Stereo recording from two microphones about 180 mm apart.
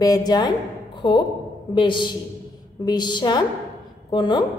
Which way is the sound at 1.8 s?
25° left (ahead or behind).